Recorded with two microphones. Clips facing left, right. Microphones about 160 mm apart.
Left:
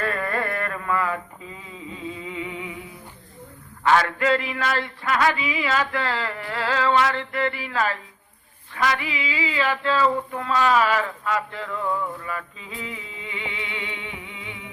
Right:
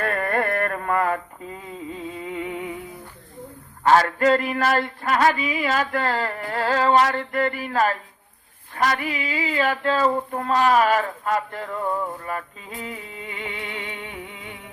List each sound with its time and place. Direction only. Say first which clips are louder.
0.0 s music: right 3 dB; 55° right (ahead or behind)
3.8 s a sound: right 3 dB; 40° right (ahead or behind)
12.2 s music: right 2 dB; 45° right (ahead or behind)